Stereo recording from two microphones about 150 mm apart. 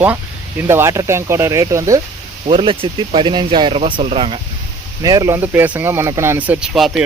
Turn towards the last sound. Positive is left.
turn(degrees=-5)  # may be behind; listen again after turning